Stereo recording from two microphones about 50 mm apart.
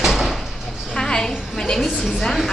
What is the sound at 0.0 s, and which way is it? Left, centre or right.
Door, centre.